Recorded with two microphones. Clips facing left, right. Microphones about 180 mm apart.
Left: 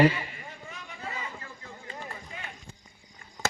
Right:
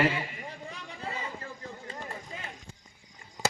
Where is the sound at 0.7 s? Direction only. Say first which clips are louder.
Right 1 dB; 35° right (ahead or behind).